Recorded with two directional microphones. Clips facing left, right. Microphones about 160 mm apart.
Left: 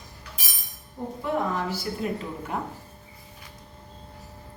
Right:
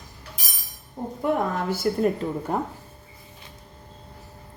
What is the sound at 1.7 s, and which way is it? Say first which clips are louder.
Speech: right 7 dB; 50° right (ahead or behind).